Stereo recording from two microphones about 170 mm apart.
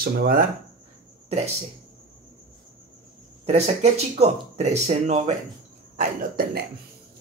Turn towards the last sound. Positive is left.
turn(degrees=-60)  # may be behind; listen again after turning